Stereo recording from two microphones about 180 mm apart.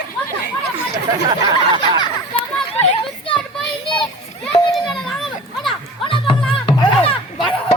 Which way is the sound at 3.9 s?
25° left (ahead or behind).